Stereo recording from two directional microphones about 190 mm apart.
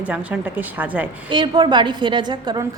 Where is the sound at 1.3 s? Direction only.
25° right (ahead or behind).